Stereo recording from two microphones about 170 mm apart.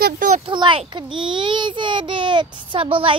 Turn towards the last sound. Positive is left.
turn(degrees=-30)  # may be behind; listen again after turning